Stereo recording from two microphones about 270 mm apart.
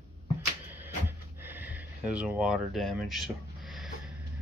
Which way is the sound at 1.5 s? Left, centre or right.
Centre.